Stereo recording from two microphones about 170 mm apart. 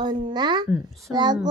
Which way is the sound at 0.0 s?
30° right (ahead or behind).